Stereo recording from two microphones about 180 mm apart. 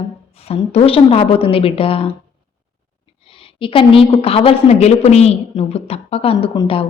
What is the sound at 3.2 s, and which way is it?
A woman's voice, 30° left (ahead or behind).